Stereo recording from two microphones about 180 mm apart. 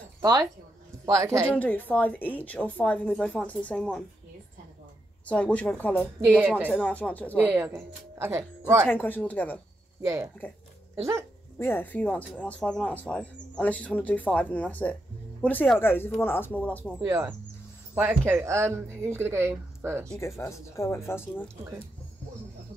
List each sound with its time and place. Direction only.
0.2 s speech: 20° right (ahead or behind)
1.5 s speech: 10° left (ahead or behind)
5.2 s speech: 5° left (ahead or behind)
7.4 s speech: 10° right (ahead or behind)
8.8 s speech: 10° left (ahead or behind)
10.0 s speech: 15° right (ahead or behind)
11.5 s speech: 10° left (ahead or behind)
17.0 s speech: 15° right (ahead or behind)
20.2 s speech: 15° left (ahead or behind)